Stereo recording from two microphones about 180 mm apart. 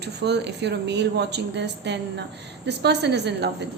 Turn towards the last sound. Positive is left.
turn(degrees=-70)  # may be behind; listen again after turning